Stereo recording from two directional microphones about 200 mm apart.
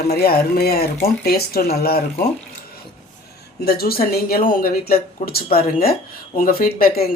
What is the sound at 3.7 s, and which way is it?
Speech, 50° left (ahead or behind).